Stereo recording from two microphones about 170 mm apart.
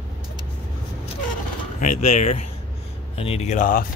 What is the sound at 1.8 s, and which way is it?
Speech, 50° left (ahead or behind).